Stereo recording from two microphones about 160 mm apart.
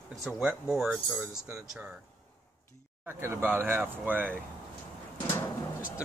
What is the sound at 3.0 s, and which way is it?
Speech, 15° right (ahead or behind).